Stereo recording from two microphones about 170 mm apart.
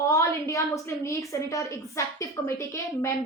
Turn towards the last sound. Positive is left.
turn(degrees=20)  # may be behind; listen again after turning